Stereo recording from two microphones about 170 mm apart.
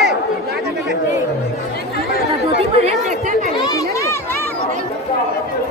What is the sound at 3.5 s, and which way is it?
Run, 20° left (ahead or behind).